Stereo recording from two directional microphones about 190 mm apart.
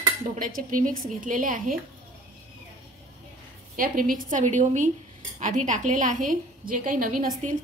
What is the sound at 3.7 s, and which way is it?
A woman's voice, 45° right (ahead or behind).